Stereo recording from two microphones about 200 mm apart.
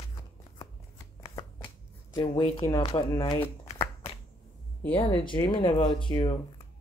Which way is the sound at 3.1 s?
20° left (ahead or behind).